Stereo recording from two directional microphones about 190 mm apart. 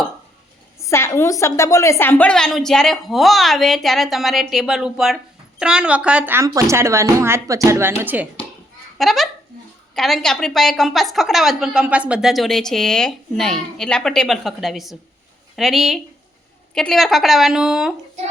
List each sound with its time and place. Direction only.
0.8 s a woman's voice: 15° left (ahead or behind); by 17.9 s 5° right (ahead or behind)